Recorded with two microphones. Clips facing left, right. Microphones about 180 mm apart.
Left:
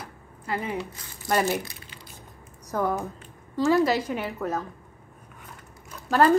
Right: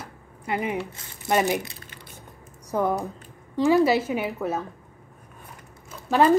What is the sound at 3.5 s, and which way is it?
Speech, 10° right (ahead or behind).